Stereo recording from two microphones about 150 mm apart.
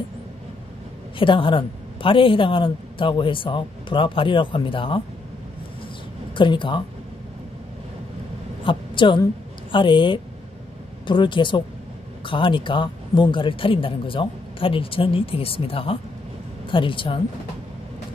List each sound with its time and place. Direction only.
1.1 s a woman's voice: 35° left (ahead or behind)
6.3 s a woman's voice: 30° left (ahead or behind)
8.6 s a woman's voice: 35° left (ahead or behind)